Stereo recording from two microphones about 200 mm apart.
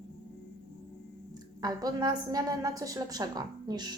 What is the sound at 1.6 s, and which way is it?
A woman's voice, 20° right (ahead or behind).